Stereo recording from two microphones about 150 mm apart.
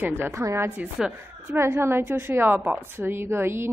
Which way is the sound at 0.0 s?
20° right (ahead or behind).